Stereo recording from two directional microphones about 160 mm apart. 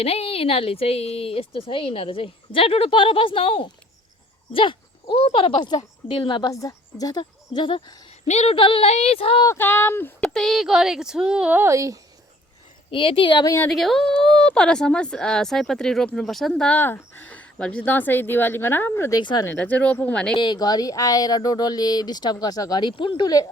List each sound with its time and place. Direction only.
0.0 s a woman's voice: 35° left (ahead or behind)
8.3 s a woman's voice: 40° left (ahead or behind)
9.5 s speech: 15° left (ahead or behind)
10.2 s speech: centre (ahead or behind); by 11.9 s 20° right (ahead or behind)
12.9 s speech: 35° left (ahead or behind)
13.7 s speech: centre (ahead or behind)
19.2 s speech: 30° left (ahead or behind)
19.5 s speech: 10° left (ahead or behind)
20.3 s speech: 30° left (ahead or behind)